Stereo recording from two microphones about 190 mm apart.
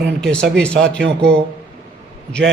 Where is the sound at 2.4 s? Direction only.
85° right.